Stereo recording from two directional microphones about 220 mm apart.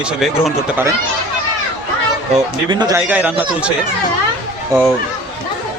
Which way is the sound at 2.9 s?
5° right (ahead or behind).